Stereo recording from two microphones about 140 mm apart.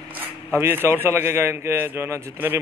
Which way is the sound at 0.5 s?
15° right (ahead or behind).